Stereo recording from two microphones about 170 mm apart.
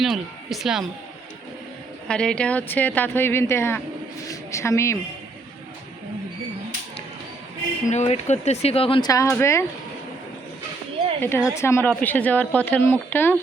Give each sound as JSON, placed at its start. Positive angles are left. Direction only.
{"t": 0.0, "sound": "speech", "side_deg": 0}
{"t": 2.0, "sound": "a woman's voice", "side_deg": 5}
{"t": 7.9, "sound": "speech", "side_deg": 40}
{"t": 11.2, "sound": "speech", "side_deg": 10}